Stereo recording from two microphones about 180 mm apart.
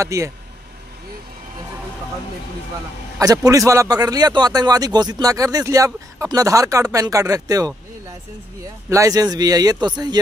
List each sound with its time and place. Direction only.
0.0 s speech: 15° right (ahead or behind)
3.2 s a man's voice: 20° right (ahead or behind)
8.9 s a man's voice: 20° right (ahead or behind)